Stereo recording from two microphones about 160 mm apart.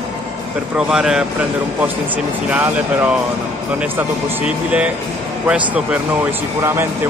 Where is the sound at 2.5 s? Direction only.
10° right (ahead or behind).